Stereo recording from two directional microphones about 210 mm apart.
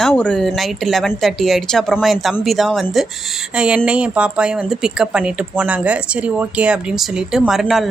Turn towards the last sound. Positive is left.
turn(degrees=0)  # may be behind; listen again after turning